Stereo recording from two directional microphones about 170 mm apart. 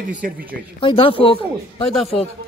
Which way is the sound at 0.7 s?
30° left (ahead or behind).